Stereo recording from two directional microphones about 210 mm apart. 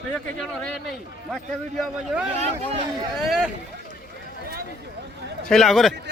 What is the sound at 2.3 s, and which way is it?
Speech, 30° right (ahead or behind).